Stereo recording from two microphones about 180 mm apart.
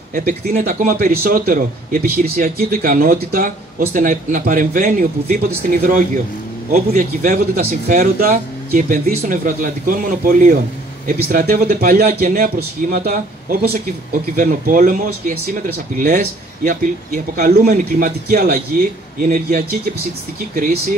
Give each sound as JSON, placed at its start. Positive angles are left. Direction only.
{"t": 0.1, "sound": "speech", "side_deg": -50}
{"t": 16.6, "sound": "speech", "side_deg": -50}